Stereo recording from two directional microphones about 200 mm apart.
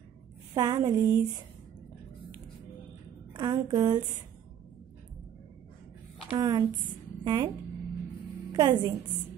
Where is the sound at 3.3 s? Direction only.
20° right (ahead or behind).